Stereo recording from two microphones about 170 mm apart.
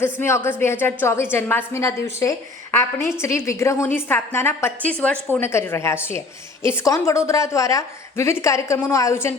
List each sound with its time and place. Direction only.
0.0 s a woman's voice: 15° left (ahead or behind)